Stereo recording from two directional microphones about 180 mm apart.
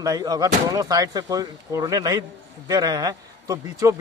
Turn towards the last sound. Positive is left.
turn(degrees=-20)  # may be behind; listen again after turning